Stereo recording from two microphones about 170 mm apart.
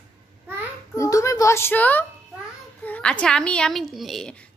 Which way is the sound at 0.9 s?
20° left (ahead or behind).